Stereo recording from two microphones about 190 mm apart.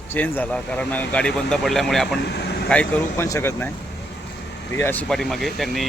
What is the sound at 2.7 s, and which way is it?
Speech, 5° left (ahead or behind).